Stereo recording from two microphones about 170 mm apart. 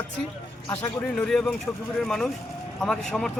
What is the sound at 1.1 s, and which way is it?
A man's voice, 5° left (ahead or behind).